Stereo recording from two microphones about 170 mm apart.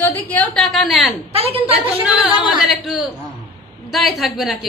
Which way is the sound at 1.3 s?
35° right (ahead or behind).